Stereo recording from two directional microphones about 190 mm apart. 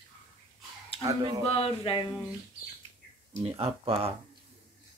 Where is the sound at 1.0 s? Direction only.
20° right (ahead or behind).